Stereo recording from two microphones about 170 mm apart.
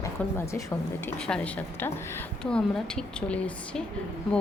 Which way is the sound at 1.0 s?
10° left (ahead or behind).